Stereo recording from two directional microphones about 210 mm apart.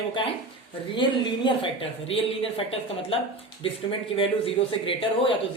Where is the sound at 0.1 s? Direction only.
25° left (ahead or behind).